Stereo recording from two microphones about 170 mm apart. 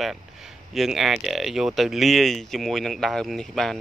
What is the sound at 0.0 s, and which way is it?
Speech, centre (ahead or behind).